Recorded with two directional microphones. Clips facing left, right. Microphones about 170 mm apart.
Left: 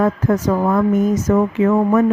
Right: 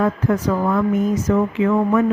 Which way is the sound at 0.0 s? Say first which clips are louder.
Left 2 dB; 40° left (ahead or behind).